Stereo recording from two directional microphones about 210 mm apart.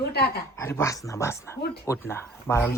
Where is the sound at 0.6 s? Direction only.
10° left (ahead or behind).